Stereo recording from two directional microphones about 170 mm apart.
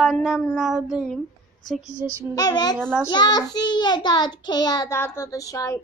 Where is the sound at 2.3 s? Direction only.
25° left (ahead or behind).